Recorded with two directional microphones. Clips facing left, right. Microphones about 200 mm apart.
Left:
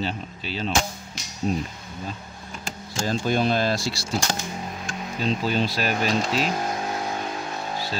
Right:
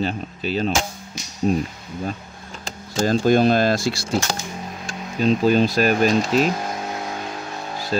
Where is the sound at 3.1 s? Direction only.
45° right (ahead or behind).